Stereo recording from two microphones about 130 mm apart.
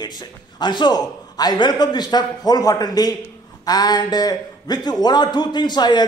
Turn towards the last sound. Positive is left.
turn(degrees=35)  # may be behind; listen again after turning